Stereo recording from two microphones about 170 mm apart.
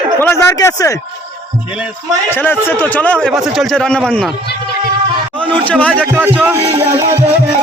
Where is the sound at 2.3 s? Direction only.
10° left (ahead or behind).